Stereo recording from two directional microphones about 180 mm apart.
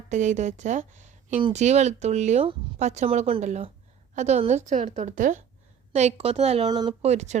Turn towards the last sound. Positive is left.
turn(degrees=-40)  # may be behind; listen again after turning